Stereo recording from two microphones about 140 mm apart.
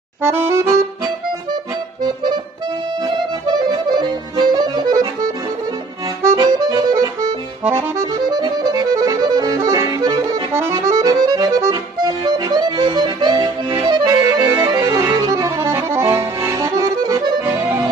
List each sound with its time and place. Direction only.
0.2 s accordion: 15° right (ahead or behind)
1.5 s accordion: 30° right (ahead or behind)
6.3 s accordion: 30° right (ahead or behind)